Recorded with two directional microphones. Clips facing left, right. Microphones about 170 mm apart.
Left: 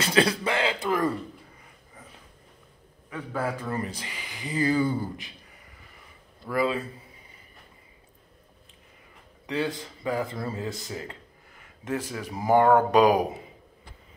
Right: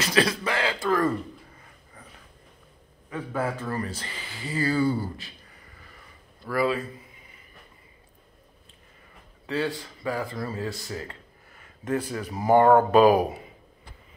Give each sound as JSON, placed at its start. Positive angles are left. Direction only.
{"t": 0.0, "sound": "speech", "side_deg": 25}
{"t": 3.1, "sound": "a man's voice", "side_deg": 0}
{"t": 3.6, "sound": "speech", "side_deg": 20}
{"t": 6.4, "sound": "speech", "side_deg": 20}
{"t": 9.5, "sound": "speech", "side_deg": 20}
{"t": 12.1, "sound": "speech", "side_deg": 10}